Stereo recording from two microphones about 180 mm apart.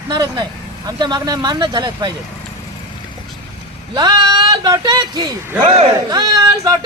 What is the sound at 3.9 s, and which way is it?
Speech, 25° right (ahead or behind).